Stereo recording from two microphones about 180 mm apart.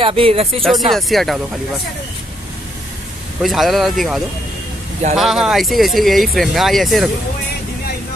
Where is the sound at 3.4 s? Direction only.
Centre (ahead or behind).